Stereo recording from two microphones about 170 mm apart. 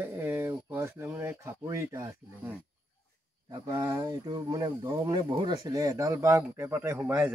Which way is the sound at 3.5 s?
25° right (ahead or behind).